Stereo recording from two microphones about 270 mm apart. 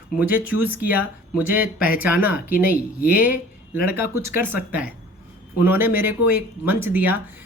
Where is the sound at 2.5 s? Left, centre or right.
Left.